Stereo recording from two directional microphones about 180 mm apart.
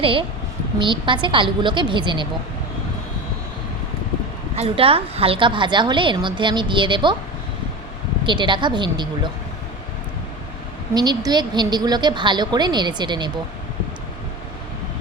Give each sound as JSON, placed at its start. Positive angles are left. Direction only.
{"t": 0.0, "sound": "a woman's voice", "side_deg": -30}
{"t": 4.5, "sound": "a woman's voice", "side_deg": -35}
{"t": 8.2, "sound": "a woman's voice", "side_deg": -25}
{"t": 10.9, "sound": "a woman's voice", "side_deg": -25}